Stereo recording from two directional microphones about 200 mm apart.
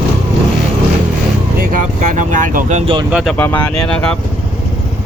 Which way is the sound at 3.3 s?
10° left (ahead or behind).